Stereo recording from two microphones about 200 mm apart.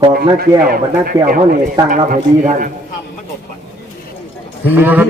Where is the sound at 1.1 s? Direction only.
15° right (ahead or behind).